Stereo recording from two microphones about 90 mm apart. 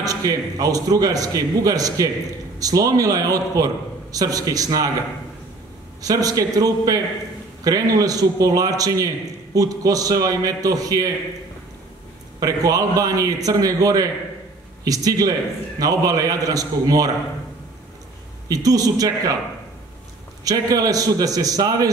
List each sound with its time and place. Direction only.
0.0 s a man's voice: 45° right (ahead or behind)
6.0 s a man's voice: 40° right (ahead or behind)
12.4 s a man's voice: 40° right (ahead or behind)
18.5 s a man's voice: 40° right (ahead or behind)
20.4 s a man's voice: 45° right (ahead or behind)